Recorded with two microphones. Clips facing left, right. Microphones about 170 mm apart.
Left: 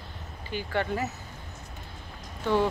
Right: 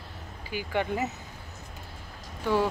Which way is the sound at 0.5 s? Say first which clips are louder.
Even; 15° right (ahead or behind).